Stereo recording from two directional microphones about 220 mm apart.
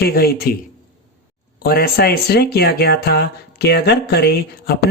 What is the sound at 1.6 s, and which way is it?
Speech, 45° left (ahead or behind).